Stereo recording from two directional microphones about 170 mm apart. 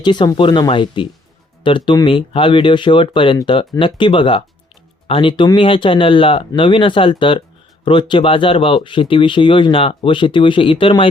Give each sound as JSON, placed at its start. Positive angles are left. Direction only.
{"t": 0.0, "sound": "speech", "side_deg": 25}